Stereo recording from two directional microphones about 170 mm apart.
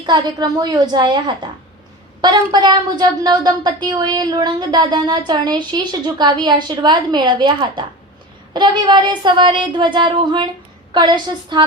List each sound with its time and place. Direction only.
0.0 s a woman's voice: 25° right (ahead or behind)